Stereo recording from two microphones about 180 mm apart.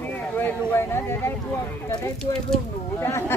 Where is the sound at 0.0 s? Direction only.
10° left (ahead or behind).